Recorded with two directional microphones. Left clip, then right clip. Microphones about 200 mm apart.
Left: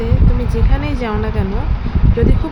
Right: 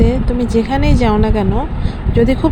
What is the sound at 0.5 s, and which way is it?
Speech, 30° right (ahead or behind).